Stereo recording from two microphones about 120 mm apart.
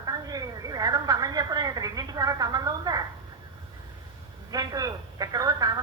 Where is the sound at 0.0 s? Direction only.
30° right (ahead or behind).